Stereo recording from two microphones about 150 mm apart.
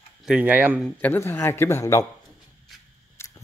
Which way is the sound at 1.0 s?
15° left (ahead or behind).